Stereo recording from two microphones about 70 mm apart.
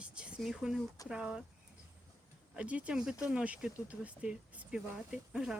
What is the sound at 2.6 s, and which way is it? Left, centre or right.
Speech, centre.